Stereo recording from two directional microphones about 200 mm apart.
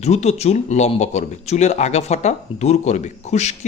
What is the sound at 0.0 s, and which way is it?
Speech, 35° left (ahead or behind).